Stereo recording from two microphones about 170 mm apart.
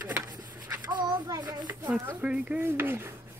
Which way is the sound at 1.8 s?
10° right (ahead or behind).